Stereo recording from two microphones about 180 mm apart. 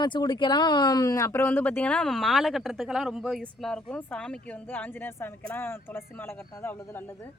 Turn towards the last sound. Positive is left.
turn(degrees=15)  # may be behind; listen again after turning